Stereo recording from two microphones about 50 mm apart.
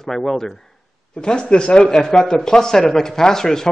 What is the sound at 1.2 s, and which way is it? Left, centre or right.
A man's voice, centre.